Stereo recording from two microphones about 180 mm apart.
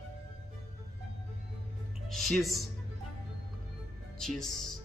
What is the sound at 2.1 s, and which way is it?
Speech, centre (ahead or behind).